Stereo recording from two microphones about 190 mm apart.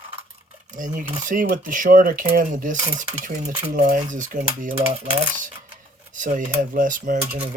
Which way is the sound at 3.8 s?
45° right (ahead or behind).